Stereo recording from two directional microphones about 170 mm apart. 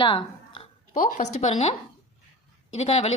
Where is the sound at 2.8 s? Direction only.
40° left (ahead or behind).